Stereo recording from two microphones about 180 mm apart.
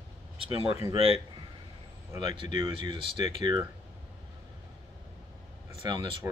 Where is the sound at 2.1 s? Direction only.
25° right (ahead or behind).